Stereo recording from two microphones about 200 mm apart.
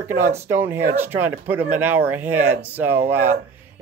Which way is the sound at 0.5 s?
10° right (ahead or behind).